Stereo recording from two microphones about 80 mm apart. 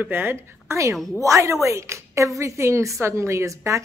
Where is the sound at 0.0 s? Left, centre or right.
Right.